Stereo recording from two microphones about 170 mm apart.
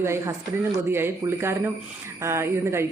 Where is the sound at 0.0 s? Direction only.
15° right (ahead or behind).